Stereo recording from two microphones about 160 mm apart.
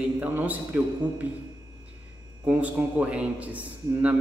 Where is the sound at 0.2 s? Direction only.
10° right (ahead or behind).